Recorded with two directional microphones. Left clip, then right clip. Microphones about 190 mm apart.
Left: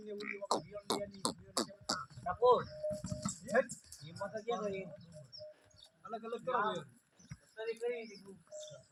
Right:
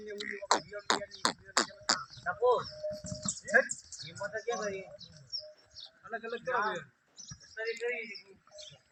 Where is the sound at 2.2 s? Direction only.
30° right (ahead or behind).